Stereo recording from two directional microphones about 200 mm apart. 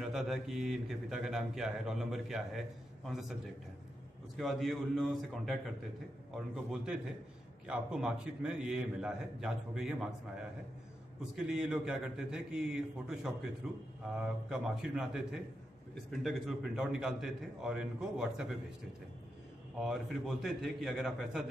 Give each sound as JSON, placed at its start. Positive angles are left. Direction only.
{"t": 0.0, "sound": "a man's voice", "side_deg": 0}
{"t": 4.4, "sound": "a man's voice", "side_deg": 0}
{"t": 11.3, "sound": "a man's voice", "side_deg": -5}
{"t": 19.8, "sound": "a man's voice", "side_deg": 0}